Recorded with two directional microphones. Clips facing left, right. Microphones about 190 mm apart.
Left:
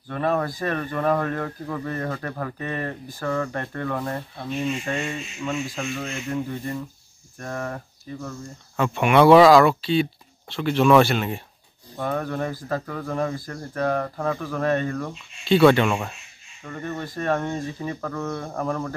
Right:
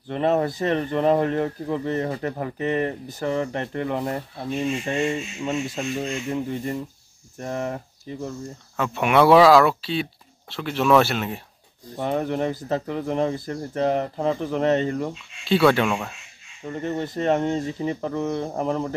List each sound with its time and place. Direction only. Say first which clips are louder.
0.1 s speech: right 3 dB; 25° right (ahead or behind)
8.7 s speech: left 1 dB; centre (ahead or behind)
12.0 s speech: right 2 dB; 25° right (ahead or behind)
15.4 s speech: left 2 dB; centre (ahead or behind)
16.6 s speech: right 4 dB; 25° right (ahead or behind)